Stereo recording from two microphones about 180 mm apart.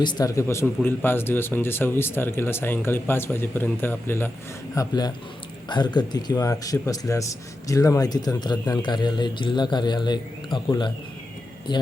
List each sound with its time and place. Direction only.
0.0 s a man's voice: 25° left (ahead or behind)